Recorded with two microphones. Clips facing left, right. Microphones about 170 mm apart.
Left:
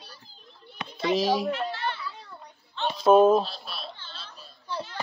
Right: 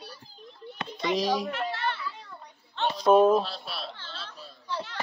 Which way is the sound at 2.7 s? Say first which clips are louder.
Right 1 dB; 55° right (ahead or behind).